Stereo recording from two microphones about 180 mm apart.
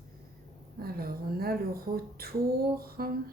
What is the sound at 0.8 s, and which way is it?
Speech, 55° right (ahead or behind).